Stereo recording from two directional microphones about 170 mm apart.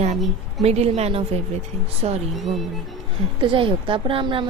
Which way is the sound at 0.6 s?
40° right (ahead or behind).